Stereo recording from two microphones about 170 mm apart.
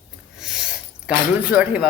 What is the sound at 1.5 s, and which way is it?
Speech, 10° right (ahead or behind).